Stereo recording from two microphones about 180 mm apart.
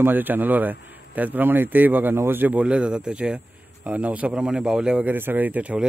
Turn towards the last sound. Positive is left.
turn(degrees=-5)  # may be behind; listen again after turning